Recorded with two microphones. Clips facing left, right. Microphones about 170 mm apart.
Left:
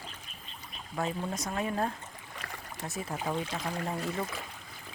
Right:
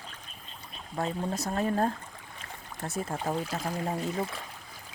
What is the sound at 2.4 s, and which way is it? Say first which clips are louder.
Boat: left 2 dB; 90° left.